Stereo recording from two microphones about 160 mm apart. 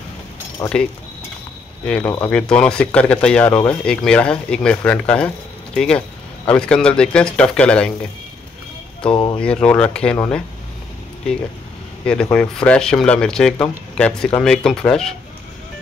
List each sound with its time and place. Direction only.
0.6 s speech: 15° left (ahead or behind)
1.9 s speech: 10° left (ahead or behind)
9.1 s speech: 30° left (ahead or behind)
9.4 s speech: 5° left (ahead or behind)
12.1 s speech: 5° left (ahead or behind)